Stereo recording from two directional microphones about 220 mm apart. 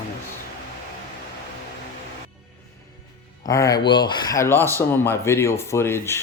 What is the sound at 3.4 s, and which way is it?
Speech, 15° left (ahead or behind).